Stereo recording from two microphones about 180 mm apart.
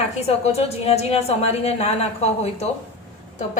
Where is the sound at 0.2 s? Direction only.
35° left (ahead or behind).